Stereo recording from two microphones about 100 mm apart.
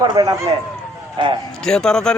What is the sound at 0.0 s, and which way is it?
Speech, 45° right (ahead or behind).